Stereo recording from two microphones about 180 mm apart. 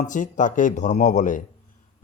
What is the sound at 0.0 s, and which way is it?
Speech, 45° left (ahead or behind).